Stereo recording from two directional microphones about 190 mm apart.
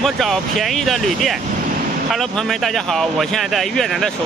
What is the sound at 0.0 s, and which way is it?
Speech, centre (ahead or behind).